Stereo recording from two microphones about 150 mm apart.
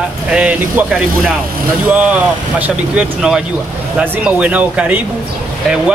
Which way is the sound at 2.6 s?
5° right (ahead or behind).